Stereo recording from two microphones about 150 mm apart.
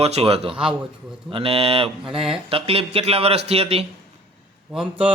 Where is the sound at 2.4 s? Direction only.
40° right (ahead or behind).